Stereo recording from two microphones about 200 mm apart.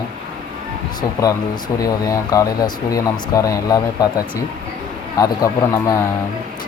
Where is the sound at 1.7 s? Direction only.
20° left (ahead or behind).